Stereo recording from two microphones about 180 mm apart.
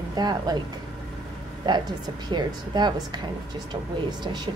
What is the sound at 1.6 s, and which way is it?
A woman's voice, 25° right (ahead or behind).